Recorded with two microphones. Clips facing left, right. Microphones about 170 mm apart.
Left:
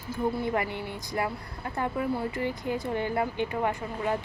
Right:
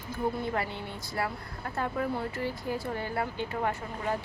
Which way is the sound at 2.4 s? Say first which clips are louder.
Left 3 dB; 20° left (ahead or behind).